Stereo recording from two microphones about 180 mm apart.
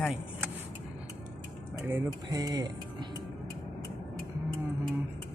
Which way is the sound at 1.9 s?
20° right (ahead or behind).